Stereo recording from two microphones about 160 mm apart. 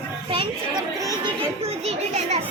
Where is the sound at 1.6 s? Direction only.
40° right (ahead or behind).